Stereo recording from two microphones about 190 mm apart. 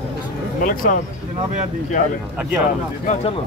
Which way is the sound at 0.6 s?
50° left (ahead or behind).